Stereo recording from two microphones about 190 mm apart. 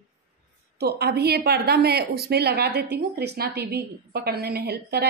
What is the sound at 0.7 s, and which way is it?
A woman's voice, 60° right (ahead or behind).